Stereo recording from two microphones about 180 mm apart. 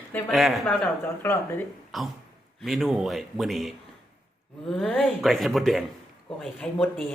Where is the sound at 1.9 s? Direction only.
Centre (ahead or behind).